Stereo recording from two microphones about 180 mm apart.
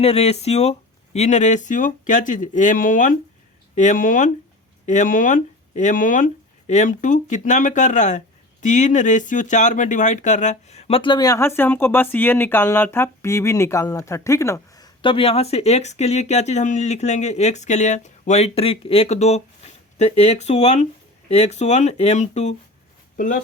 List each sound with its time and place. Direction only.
0.0 s speech: 35° left (ahead or behind)